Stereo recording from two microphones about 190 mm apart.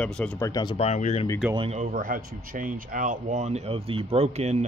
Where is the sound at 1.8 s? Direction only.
45° right (ahead or behind).